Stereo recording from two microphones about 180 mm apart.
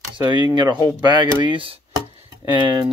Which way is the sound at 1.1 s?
25° right (ahead or behind).